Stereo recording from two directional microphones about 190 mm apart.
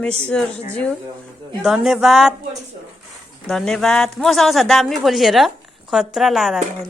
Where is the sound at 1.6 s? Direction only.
Centre (ahead or behind).